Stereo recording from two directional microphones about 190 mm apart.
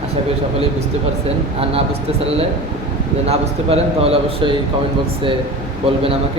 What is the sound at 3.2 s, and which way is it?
A man's voice, 30° right (ahead or behind).